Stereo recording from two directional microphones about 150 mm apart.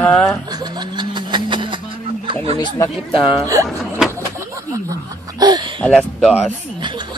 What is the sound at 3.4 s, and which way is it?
Speech, 20° right (ahead or behind).